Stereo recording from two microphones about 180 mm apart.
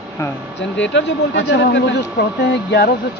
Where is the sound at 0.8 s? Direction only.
85° left.